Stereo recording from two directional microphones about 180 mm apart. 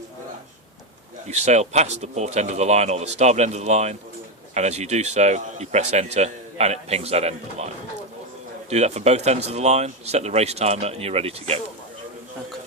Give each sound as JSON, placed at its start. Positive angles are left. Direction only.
{"t": 1.3, "sound": "speech", "side_deg": -40}
{"t": 8.7, "sound": "speech", "side_deg": -40}